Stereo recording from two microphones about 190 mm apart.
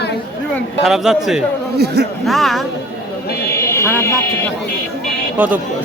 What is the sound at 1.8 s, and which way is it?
Speech, 60° right (ahead or behind).